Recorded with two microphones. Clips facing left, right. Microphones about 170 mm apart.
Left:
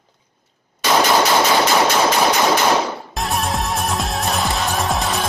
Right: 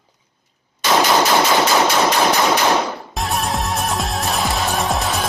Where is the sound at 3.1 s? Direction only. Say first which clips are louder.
Even; centre (ahead or behind).